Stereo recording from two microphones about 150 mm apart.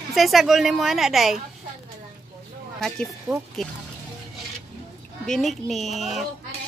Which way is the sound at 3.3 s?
20° right (ahead or behind).